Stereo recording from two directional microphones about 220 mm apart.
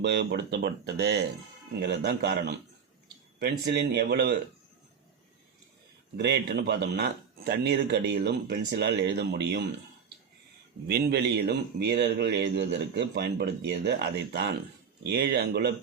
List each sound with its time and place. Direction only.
0.0 s a man's voice: 50° right (ahead or behind)
6.1 s a man's voice: 50° right (ahead or behind)
10.8 s a man's voice: 45° right (ahead or behind)